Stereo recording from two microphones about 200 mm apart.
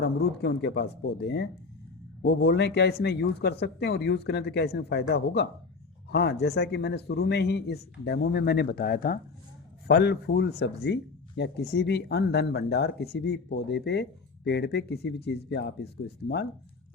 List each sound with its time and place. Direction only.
0.0 s speech: 55° left (ahead or behind)